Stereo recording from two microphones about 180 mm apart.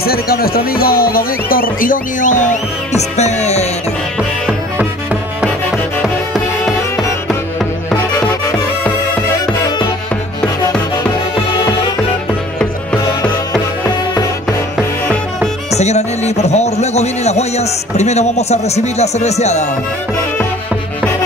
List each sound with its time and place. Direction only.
0.0 s speech: 60° left (ahead or behind); by 3.6 s 40° left (ahead or behind)
4.2 s music: 5° right (ahead or behind)
6.0 s music: centre (ahead or behind)
12.5 s music: 5° left (ahead or behind)
14.8 s music: 5° left (ahead or behind)
15.7 s speech: 40° left (ahead or behind)